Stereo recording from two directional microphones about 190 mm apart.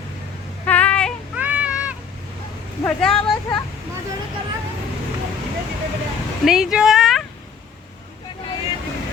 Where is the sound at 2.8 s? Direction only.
5° left (ahead or behind).